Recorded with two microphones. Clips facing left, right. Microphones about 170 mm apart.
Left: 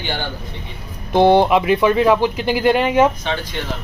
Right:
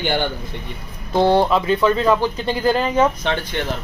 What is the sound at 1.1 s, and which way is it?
Speech, 20° left (ahead or behind).